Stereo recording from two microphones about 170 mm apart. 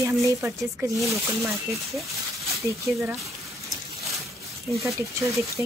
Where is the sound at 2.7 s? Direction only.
20° right (ahead or behind).